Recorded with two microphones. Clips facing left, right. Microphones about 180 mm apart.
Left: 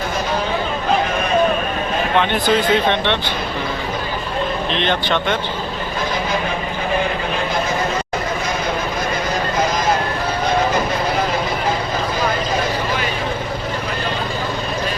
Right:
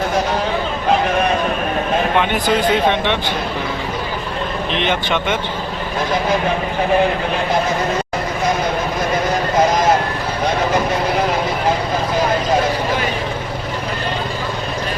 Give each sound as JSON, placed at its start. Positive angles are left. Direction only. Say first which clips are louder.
{"t": 2.1, "sound": "speech", "louder": "left 4 dB", "side_deg": -10}
{"t": 4.7, "sound": "speech", "louder": "right 2 dB", "side_deg": -10}